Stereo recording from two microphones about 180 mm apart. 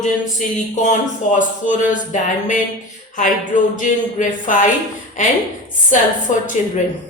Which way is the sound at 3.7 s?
45° left (ahead or behind).